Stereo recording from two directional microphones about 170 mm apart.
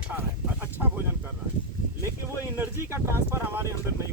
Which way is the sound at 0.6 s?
10° right (ahead or behind).